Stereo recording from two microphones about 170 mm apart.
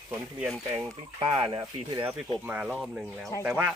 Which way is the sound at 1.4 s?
30° right (ahead or behind).